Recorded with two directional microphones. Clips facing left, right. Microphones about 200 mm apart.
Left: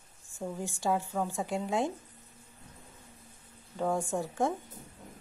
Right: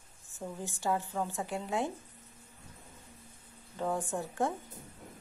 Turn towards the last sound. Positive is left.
turn(degrees=15)  # may be behind; listen again after turning